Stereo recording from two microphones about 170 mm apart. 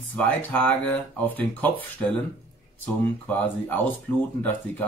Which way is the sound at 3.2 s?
10° left (ahead or behind).